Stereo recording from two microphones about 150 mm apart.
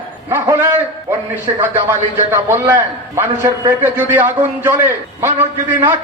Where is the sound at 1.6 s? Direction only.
15° right (ahead or behind).